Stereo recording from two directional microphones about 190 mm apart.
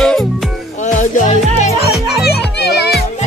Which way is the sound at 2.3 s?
60° left (ahead or behind).